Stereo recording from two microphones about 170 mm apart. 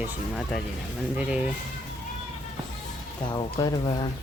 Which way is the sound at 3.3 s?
25° left (ahead or behind).